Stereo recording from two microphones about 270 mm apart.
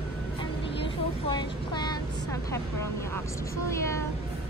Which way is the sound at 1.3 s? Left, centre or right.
Centre.